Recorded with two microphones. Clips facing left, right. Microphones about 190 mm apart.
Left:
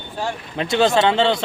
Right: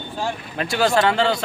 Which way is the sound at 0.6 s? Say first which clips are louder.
Left 2 dB; 20° left (ahead or behind).